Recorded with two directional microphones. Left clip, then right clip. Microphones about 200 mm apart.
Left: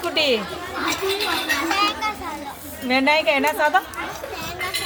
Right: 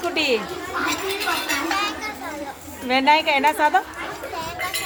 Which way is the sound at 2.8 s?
10° right (ahead or behind).